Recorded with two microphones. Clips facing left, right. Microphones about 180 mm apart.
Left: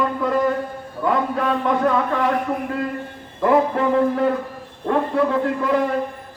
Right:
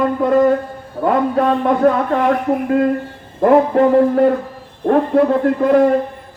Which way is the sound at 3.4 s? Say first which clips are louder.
Right 6 dB; 45° right (ahead or behind).